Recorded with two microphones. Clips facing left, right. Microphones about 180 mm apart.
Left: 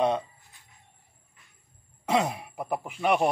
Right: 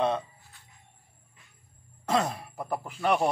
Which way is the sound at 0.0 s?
15° left (ahead or behind).